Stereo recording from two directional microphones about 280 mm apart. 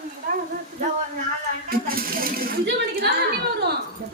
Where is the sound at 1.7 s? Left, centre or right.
Right.